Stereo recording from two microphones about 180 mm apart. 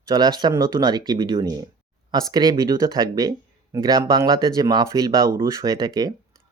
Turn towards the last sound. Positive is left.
turn(degrees=-20)  # may be behind; listen again after turning